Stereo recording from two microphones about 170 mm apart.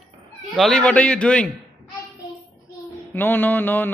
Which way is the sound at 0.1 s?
30° right (ahead or behind).